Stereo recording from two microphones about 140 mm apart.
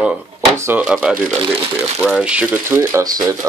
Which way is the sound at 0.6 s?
15° right (ahead or behind).